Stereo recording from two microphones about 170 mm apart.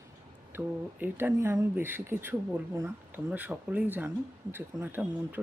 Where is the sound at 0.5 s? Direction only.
10° right (ahead or behind).